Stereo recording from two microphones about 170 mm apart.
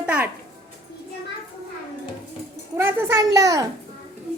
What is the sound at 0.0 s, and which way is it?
Music, 5° right (ahead or behind).